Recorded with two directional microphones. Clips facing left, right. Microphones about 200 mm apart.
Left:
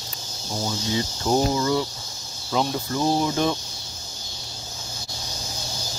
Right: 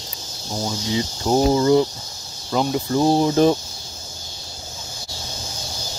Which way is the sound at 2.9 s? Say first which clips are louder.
Right 6 dB; 35° right (ahead or behind).